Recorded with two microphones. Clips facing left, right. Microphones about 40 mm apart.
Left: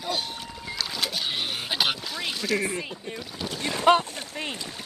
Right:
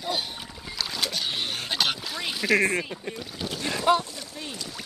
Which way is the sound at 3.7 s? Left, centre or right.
Left.